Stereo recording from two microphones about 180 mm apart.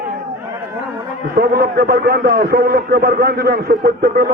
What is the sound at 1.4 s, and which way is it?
A man's voice, 60° right (ahead or behind).